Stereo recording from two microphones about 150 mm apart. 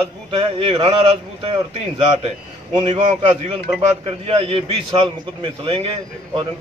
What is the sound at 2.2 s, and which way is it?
A man's voice, 40° right (ahead or behind).